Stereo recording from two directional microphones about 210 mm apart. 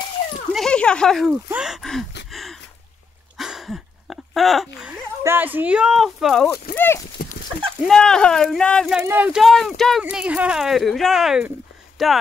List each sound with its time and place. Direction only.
0.5 s speech: centre (ahead or behind)
2.3 s a sound: centre (ahead or behind)
4.7 s speech: 5° right (ahead or behind)
6.7 s horse: 10° left (ahead or behind)
7.2 s a sound: 45° left (ahead or behind)
7.8 s speech: 5° left (ahead or behind)